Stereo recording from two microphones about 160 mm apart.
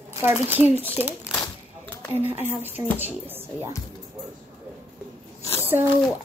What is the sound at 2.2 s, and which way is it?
Speech, 45° left (ahead or behind).